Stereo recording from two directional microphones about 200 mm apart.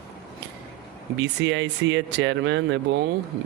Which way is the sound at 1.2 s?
65° right (ahead or behind).